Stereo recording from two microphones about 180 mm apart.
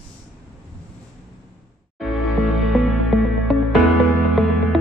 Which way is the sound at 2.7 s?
Centre (ahead or behind).